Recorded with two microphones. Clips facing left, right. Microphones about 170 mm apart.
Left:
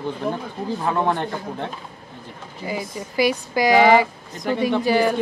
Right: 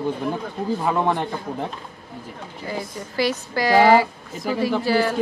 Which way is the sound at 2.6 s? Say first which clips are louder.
Left 2 dB; 10° left (ahead or behind).